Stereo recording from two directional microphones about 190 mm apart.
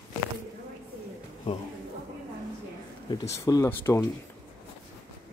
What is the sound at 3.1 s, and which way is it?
Speech, 20° left (ahead or behind).